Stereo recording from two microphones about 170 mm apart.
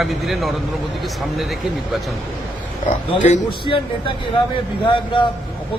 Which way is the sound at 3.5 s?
30° left (ahead or behind).